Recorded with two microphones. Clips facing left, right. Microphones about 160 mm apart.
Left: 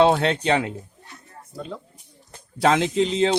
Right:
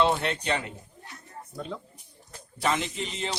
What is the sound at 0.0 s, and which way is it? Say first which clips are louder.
Music: left 7 dB; 80° left.